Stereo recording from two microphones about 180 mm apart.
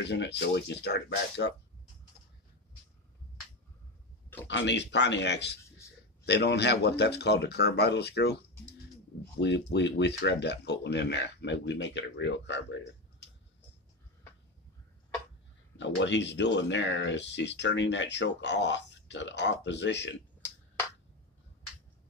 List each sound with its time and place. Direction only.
0.0 s speech: 75° left (ahead or behind)
4.5 s speech: 80° left
9.4 s speech: 75° left (ahead or behind)
15.8 s speech: 85° left